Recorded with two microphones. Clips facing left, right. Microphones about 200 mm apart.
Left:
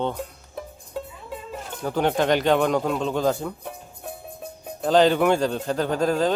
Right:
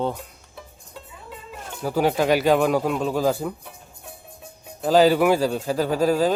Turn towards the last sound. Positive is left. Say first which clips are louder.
# right 2 dB
turn(degrees=-5)  # may be behind; listen again after turning